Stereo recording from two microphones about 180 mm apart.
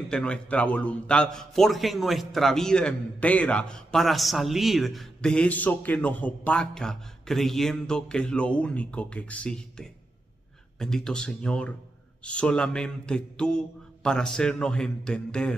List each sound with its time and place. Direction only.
0.1 s a man's voice: 5° left (ahead or behind)